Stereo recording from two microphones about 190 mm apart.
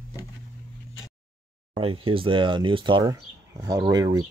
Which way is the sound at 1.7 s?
30° right (ahead or behind).